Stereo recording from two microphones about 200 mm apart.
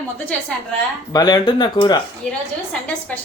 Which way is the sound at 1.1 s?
20° left (ahead or behind).